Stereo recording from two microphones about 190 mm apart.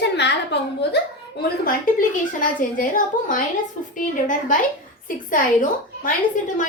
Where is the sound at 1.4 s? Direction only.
45° left (ahead or behind).